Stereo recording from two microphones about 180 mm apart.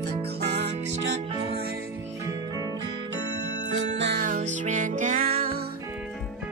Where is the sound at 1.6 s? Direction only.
55° right (ahead or behind).